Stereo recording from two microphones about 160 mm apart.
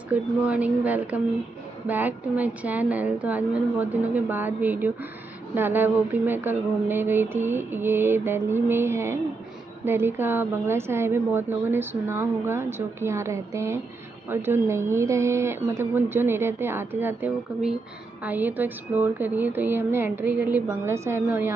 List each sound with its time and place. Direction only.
0.1 s a woman's voice: 10° right (ahead or behind)